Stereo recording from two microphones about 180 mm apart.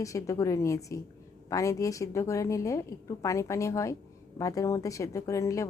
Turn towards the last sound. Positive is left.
turn(degrees=15)  # may be behind; listen again after turning